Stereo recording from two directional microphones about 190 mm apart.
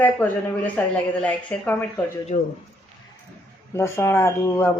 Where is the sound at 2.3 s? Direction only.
40° left (ahead or behind).